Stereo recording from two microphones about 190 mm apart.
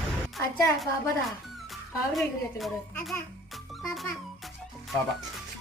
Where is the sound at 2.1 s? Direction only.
Centre (ahead or behind).